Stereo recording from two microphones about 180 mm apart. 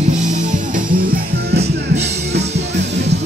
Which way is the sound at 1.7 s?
65° right (ahead or behind).